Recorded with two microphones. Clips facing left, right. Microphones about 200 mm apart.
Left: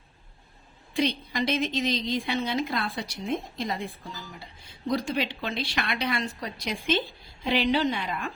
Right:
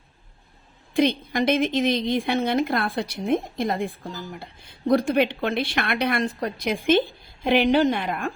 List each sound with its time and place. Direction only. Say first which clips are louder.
0.9 s a woman's voice: right 6 dB; 50° right (ahead or behind)